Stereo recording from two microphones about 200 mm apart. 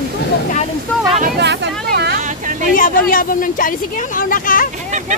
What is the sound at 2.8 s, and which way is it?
Speech, 45° left (ahead or behind).